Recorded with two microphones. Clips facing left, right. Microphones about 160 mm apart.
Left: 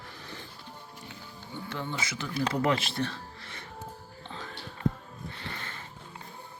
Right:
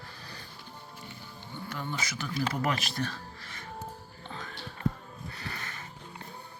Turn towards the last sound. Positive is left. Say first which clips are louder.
# even
turn(degrees=30)  # may be behind; listen again after turning